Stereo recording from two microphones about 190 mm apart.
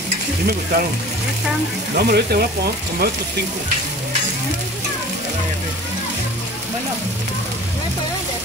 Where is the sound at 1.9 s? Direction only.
55° right (ahead or behind).